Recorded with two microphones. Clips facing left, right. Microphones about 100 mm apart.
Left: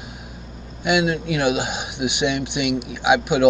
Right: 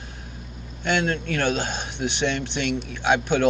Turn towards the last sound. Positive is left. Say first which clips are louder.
# left 3 dB
turn(degrees=10)  # may be behind; listen again after turning